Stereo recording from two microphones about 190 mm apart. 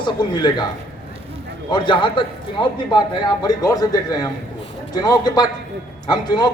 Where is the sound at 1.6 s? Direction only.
25° left (ahead or behind).